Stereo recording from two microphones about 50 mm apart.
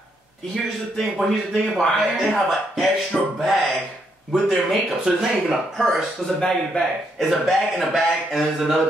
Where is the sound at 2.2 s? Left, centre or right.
Centre.